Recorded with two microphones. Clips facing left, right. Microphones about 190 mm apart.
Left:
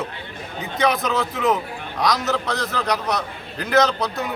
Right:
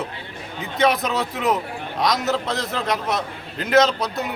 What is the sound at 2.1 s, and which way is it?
Speech, 20° right (ahead or behind).